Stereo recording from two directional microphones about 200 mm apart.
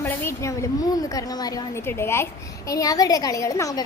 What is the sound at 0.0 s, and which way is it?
A woman's voice, 10° left (ahead or behind).